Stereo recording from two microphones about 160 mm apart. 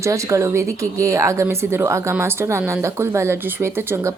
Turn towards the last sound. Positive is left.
turn(degrees=-15)  # may be behind; listen again after turning